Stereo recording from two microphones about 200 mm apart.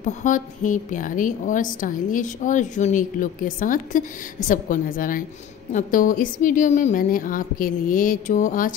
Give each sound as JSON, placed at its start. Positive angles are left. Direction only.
{"t": 0.0, "sound": "a woman's voice", "side_deg": 40}